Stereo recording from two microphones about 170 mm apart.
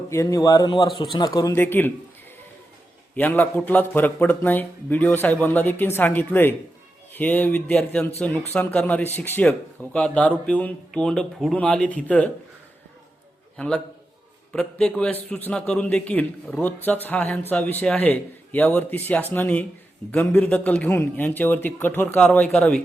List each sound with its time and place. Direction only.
0.1 s speech: 15° left (ahead or behind)
3.2 s a man's voice: 10° left (ahead or behind)
13.6 s a man's voice: 5° left (ahead or behind)